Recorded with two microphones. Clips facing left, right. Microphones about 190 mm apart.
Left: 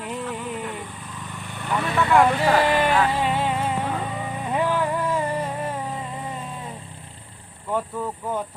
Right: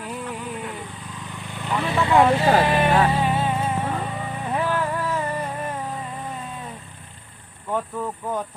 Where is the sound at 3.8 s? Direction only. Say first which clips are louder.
Even; 5° right (ahead or behind).